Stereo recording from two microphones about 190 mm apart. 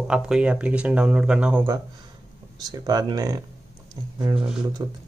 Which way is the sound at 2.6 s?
20° right (ahead or behind).